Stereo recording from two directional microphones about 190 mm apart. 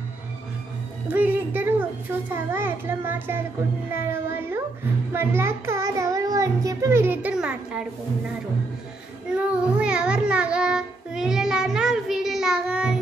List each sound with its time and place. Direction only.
1.1 s a child's voice: 10° right (ahead or behind)
9.3 s child singing: 5° right (ahead or behind)